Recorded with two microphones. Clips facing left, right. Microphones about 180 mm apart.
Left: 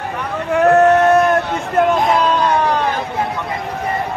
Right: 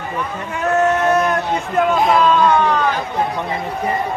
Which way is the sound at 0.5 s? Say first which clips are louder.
Left 6 dB; 60° left (ahead or behind).